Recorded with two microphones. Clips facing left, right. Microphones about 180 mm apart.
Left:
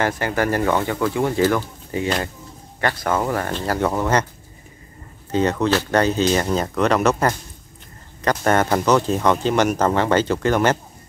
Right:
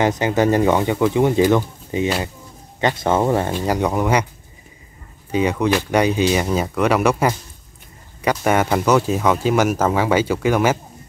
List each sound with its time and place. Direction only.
0.0 s speech: 20° right (ahead or behind)
2.0 s speech: 5° right (ahead or behind)
2.8 s speech: 20° right (ahead or behind)
5.3 s speech: 10° right (ahead or behind)